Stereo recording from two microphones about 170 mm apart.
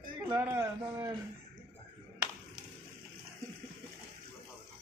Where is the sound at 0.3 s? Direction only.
15° right (ahead or behind).